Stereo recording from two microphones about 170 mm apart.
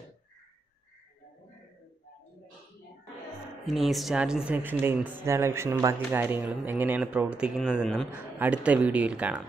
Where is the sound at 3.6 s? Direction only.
Centre (ahead or behind).